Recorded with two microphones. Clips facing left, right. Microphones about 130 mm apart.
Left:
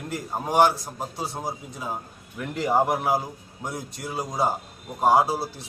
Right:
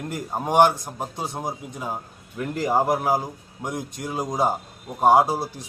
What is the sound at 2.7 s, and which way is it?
A man's voice, 10° right (ahead or behind).